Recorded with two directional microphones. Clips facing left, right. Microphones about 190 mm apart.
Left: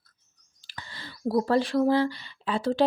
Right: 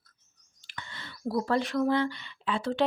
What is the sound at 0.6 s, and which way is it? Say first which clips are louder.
Speech: left 1 dB; 35° left (ahead or behind).